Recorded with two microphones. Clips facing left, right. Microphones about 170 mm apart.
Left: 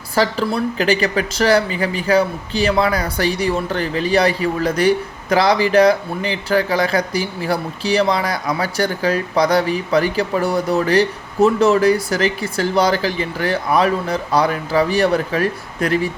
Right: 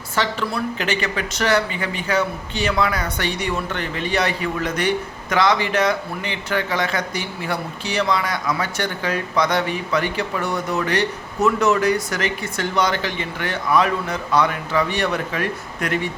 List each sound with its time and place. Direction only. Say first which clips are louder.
0.2 s speech: left 5 dB; 35° left (ahead or behind)